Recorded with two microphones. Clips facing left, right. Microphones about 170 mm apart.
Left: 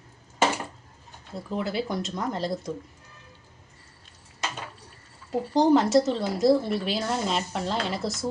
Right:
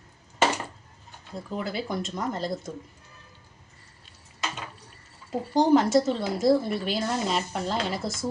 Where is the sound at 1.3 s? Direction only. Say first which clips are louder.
Left 3 dB; centre (ahead or behind).